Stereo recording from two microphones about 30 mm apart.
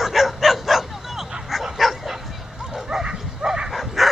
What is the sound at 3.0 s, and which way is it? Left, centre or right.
Bow-wow, right.